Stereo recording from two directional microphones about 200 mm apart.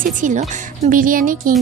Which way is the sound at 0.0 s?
40° right (ahead or behind).